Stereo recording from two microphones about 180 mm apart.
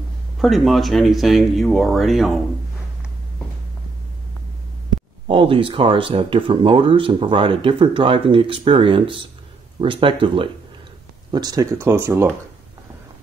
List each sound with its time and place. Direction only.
0.4 s speech: centre (ahead or behind)
5.3 s speech: 30° right (ahead or behind); by 12.3 s 15° right (ahead or behind)